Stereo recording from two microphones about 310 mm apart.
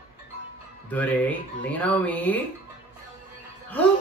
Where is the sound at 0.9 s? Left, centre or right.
Centre.